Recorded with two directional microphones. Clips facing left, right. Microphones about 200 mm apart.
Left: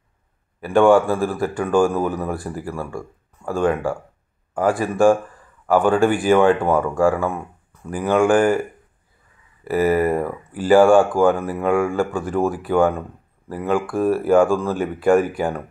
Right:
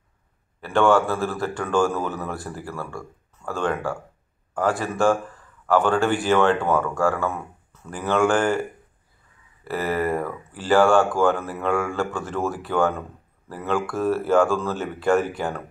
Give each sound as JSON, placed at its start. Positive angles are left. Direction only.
{"t": 0.6, "sound": "a man's voice", "side_deg": 15}
{"t": 9.7, "sound": "a man's voice", "side_deg": 15}